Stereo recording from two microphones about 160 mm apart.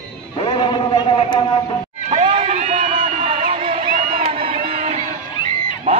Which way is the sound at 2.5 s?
45° right (ahead or behind).